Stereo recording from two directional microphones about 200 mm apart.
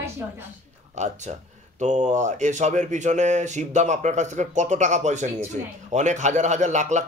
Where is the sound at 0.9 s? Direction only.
35° right (ahead or behind).